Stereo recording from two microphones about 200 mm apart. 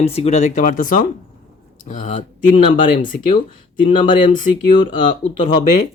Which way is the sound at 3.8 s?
25° left (ahead or behind).